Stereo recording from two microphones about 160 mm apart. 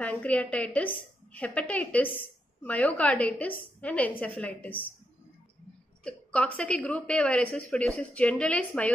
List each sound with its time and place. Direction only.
0.0 s a woman's voice: 10° left (ahead or behind)
6.0 s a woman's voice: 10° left (ahead or behind)